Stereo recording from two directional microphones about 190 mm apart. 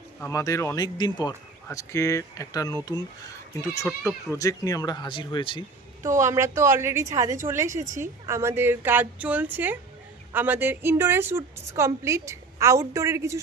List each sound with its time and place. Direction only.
0.2 s speech: 15° left (ahead or behind)
6.0 s a woman's voice: 15° right (ahead or behind)